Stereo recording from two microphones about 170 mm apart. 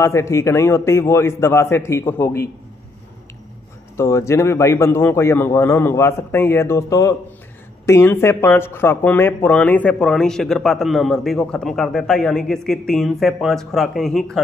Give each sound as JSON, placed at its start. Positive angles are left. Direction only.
{"t": 0.0, "sound": "a man's voice", "side_deg": 15}
{"t": 3.9, "sound": "a man's voice", "side_deg": 15}